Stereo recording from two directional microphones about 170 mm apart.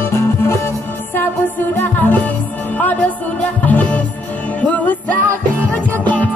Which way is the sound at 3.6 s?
10° left (ahead or behind).